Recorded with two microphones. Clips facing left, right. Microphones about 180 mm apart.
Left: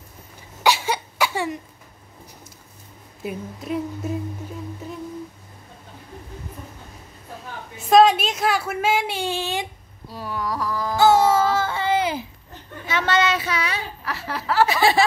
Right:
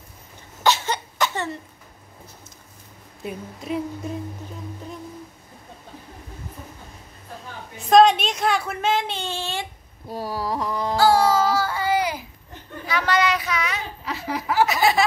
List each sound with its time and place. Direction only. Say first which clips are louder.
0.7 s cough: left 1 dB; 10° left (ahead or behind)
3.3 s speech: left 1 dB; centre (ahead or behind)
7.7 s speech: even; 5° left (ahead or behind)
10.0 s a sound: right 1 dB; 40° right (ahead or behind); by 11.0 s 25° right (ahead or behind)
11.0 s child singing: left 2 dB; 20° left (ahead or behind)
12.8 s speech: left 1 dB; 25° left (ahead or behind)
14.0 s speech: right 1 dB; 15° right (ahead or behind)
14.7 s speech: left 1 dB; 30° left (ahead or behind)